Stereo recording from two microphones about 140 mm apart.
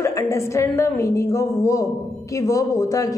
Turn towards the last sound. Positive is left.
turn(degrees=25)  # may be behind; listen again after turning